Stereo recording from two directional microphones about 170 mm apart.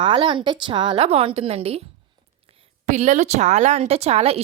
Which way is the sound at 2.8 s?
45° right (ahead or behind).